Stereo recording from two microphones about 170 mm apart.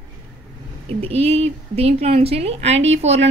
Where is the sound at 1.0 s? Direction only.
35° right (ahead or behind).